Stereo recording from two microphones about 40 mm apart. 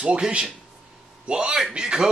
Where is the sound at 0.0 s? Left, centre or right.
Right.